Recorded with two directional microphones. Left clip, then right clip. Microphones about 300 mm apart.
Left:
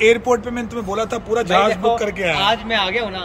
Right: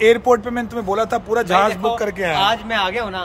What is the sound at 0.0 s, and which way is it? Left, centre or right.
A man's voice, right.